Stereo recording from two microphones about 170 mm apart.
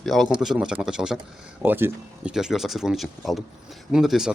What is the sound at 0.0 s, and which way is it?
Speech, centre (ahead or behind).